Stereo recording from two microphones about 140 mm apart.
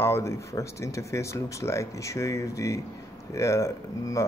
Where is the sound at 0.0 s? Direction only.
20° left (ahead or behind).